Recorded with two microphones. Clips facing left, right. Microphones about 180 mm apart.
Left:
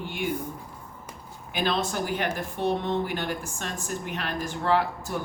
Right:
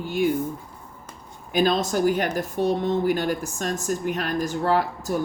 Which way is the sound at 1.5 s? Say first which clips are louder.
Right 6 dB; 45° right (ahead or behind).